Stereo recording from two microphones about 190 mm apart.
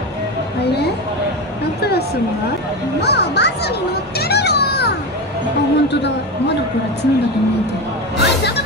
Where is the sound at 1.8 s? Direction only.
55° left (ahead or behind).